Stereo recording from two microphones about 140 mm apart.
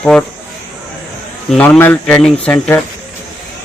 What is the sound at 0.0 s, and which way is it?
Speech, 5° left (ahead or behind).